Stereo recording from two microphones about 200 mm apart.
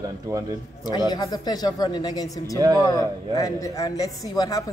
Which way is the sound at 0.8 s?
20° left (ahead or behind).